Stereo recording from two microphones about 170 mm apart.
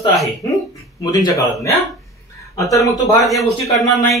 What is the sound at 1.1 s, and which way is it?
Speech, 20° left (ahead or behind).